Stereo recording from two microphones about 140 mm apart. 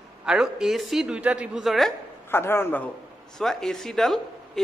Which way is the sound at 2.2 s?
15° left (ahead or behind).